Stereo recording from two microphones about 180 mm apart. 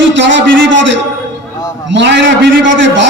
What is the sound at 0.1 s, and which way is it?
A man's voice, 90° right.